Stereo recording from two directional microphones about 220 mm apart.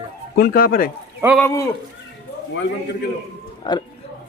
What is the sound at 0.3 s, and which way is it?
Speech, 40° left (ahead or behind).